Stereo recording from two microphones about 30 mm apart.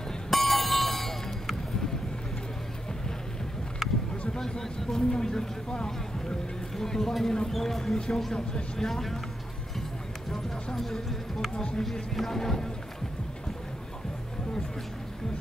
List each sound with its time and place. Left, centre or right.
0.3 s bicycle bell: centre
3.8 s a sound: centre
4.4 s vehicle: centre
5.1 s a sound: left
7.5 s speech: centre
10.3 s speech: centre
11.5 s speech: left
12.2 s speech: centre